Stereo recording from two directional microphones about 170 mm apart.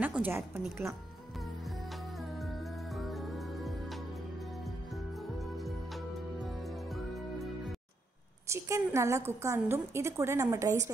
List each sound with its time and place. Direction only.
0.0 s a woman's voice: 10° right (ahead or behind)
2.3 s music: centre (ahead or behind)
5.4 s music: centre (ahead or behind)
8.5 s a woman's voice: 15° right (ahead or behind)